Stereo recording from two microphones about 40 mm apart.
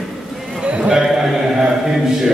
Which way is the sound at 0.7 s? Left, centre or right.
Right.